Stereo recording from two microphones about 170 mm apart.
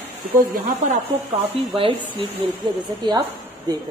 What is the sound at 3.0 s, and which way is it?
Speech, 25° right (ahead or behind).